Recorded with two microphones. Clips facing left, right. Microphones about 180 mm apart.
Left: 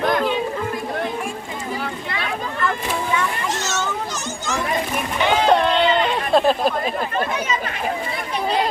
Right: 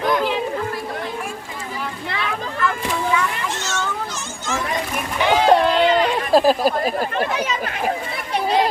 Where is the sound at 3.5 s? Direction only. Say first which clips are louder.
Left 1 dB; 40° left (ahead or behind).